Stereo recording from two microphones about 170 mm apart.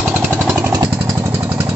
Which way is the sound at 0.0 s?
10° right (ahead or behind).